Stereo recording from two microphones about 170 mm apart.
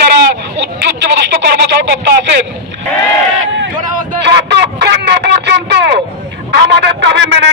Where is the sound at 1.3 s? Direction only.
85° right.